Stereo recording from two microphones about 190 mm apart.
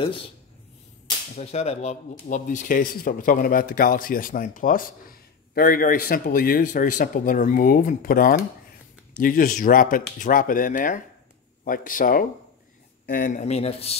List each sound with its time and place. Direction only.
0.0 s speech: 30° left (ahead or behind)
1.3 s speech: 35° left (ahead or behind)